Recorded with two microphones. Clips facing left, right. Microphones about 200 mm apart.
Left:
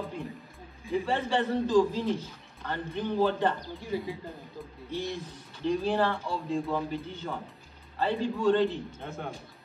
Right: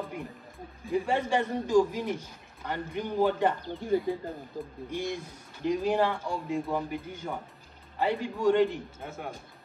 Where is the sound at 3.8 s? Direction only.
50° right (ahead or behind).